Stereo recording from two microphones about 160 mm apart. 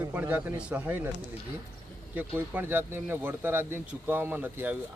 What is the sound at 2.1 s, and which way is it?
Speech, 10° right (ahead or behind).